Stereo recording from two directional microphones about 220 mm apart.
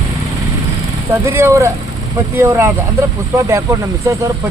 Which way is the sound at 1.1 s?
10° right (ahead or behind).